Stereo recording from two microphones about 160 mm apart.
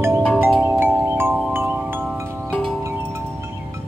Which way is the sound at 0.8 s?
15° right (ahead or behind).